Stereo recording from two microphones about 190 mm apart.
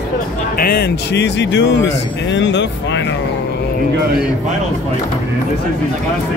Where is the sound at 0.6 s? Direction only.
50° left (ahead or behind); by 3.2 s 70° left (ahead or behind).